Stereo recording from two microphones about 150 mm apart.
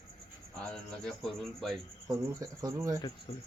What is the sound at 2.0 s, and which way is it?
Speech, 25° right (ahead or behind).